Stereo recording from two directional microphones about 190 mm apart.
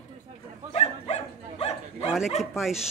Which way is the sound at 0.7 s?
35° left (ahead or behind).